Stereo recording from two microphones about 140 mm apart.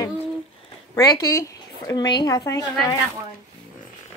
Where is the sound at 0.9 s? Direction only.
25° left (ahead or behind).